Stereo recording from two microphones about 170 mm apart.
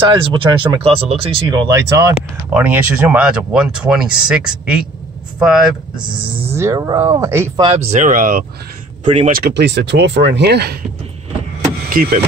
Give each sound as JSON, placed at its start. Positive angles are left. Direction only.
{"t": 0.1, "sound": "speech", "side_deg": -25}
{"t": 1.5, "sound": "speech", "side_deg": -20}
{"t": 6.5, "sound": "speech", "side_deg": -15}
{"t": 7.6, "sound": "speech", "side_deg": -35}
{"t": 9.0, "sound": "speech", "side_deg": -35}
{"t": 9.3, "sound": "speech", "side_deg": -75}
{"t": 11.9, "sound": "speech", "side_deg": -55}